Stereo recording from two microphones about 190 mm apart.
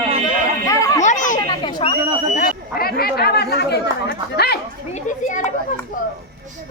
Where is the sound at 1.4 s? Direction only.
20° left (ahead or behind).